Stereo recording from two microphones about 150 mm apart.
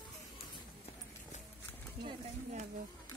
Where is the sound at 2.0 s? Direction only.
50° right (ahead or behind).